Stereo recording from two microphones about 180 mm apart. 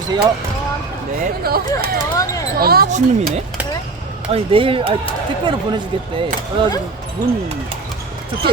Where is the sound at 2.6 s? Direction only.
55° right (ahead or behind).